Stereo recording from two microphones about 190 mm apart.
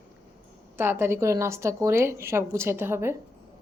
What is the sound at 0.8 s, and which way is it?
A woman's voice, 10° right (ahead or behind).